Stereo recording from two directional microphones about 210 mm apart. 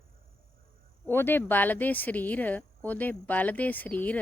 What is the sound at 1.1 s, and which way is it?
Speech, 10° left (ahead or behind).